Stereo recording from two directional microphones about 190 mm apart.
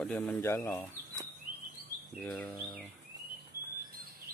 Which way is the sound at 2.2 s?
5° left (ahead or behind).